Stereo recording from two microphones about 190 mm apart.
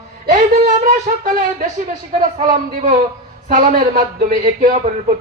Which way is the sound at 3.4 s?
45° right (ahead or behind).